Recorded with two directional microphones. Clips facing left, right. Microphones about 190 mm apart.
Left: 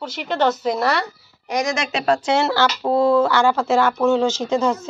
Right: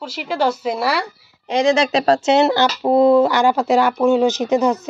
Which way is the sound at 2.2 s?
20° right (ahead or behind).